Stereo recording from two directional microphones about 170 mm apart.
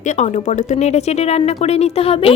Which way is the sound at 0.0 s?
45° left (ahead or behind).